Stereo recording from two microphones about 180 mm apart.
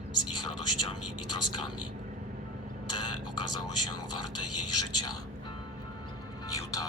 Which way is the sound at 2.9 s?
25° left (ahead or behind).